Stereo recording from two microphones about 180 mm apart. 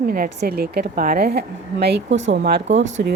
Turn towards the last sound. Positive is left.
turn(degrees=-90)